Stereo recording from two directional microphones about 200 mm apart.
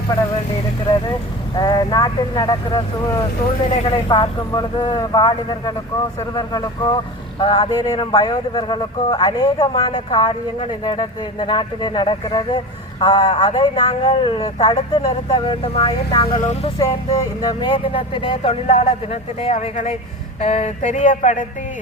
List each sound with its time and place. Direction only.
1.5 s a man's voice: 20° left (ahead or behind)
16.7 s a man's voice: 20° left (ahead or behind); by 21.4 s 40° left (ahead or behind)